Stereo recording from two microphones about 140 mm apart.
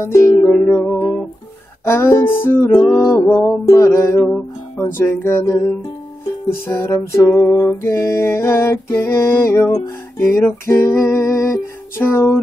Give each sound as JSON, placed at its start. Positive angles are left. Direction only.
{"t": 0.0, "sound": "music", "side_deg": 20}
{"t": 0.5, "sound": "music", "side_deg": 10}
{"t": 1.9, "sound": "music", "side_deg": 20}
{"t": 6.7, "sound": "music", "side_deg": 20}